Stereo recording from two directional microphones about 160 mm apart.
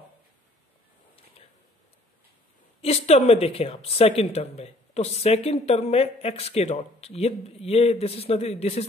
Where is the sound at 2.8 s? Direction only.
40° left (ahead or behind).